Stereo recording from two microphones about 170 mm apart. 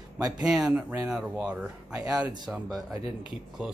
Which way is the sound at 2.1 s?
20° right (ahead or behind).